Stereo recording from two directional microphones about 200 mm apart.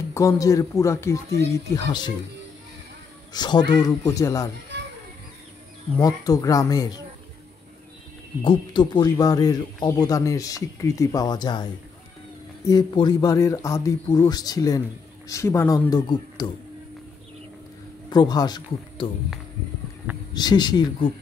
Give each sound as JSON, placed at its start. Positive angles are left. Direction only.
{"t": 0.1, "sound": "a man's voice", "side_deg": 15}
{"t": 3.3, "sound": "a man's voice", "side_deg": 20}
{"t": 5.9, "sound": "a man's voice", "side_deg": 20}
{"t": 8.5, "sound": "a man's voice", "side_deg": 20}
{"t": 12.6, "sound": "a man's voice", "side_deg": 20}
{"t": 18.1, "sound": "speech", "side_deg": 20}
{"t": 20.3, "sound": "speech", "side_deg": 20}